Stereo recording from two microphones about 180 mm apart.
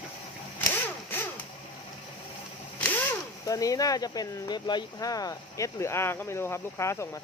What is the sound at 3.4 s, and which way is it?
Speech, 20° left (ahead or behind).